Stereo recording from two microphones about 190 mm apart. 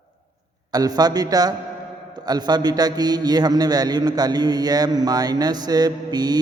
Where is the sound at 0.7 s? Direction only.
20° right (ahead or behind).